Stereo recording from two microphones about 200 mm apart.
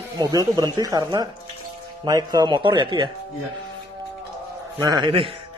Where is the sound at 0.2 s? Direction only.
20° right (ahead or behind).